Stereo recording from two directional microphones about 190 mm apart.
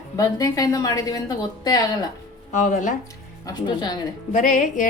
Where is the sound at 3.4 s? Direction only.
20° left (ahead or behind).